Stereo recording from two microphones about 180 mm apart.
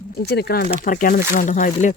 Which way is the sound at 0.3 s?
65° left (ahead or behind).